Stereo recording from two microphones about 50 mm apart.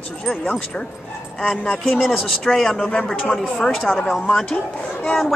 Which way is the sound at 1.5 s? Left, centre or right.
Centre.